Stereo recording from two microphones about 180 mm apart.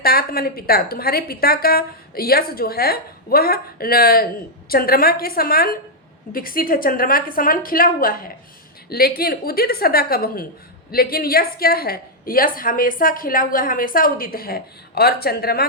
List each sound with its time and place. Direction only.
0.0 s a woman's voice: 55° left (ahead or behind)